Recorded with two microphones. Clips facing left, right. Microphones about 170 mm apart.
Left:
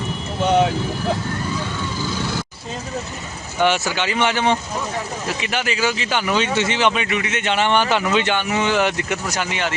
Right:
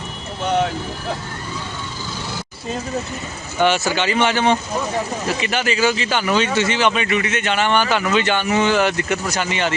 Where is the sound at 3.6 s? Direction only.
15° left (ahead or behind).